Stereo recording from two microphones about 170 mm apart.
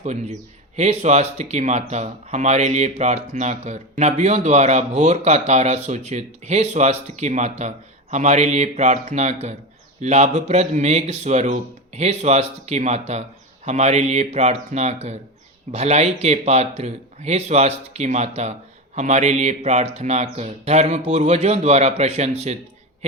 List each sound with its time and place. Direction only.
0.0 s speech: 40° right (ahead or behind)